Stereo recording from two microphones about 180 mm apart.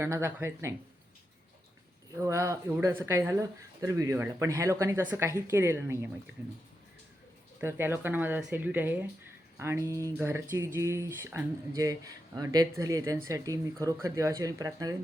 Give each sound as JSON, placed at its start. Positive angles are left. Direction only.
{"t": 0.0, "sound": "speech", "side_deg": -15}
{"t": 2.2, "sound": "speech", "side_deg": -15}
{"t": 7.6, "sound": "speech", "side_deg": -10}